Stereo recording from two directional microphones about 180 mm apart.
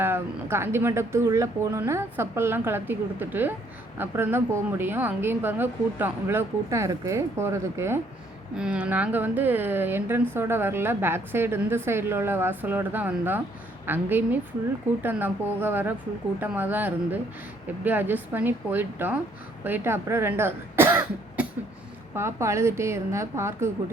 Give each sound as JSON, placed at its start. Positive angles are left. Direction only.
{"t": 0.0, "sound": "a woman's voice", "side_deg": -10}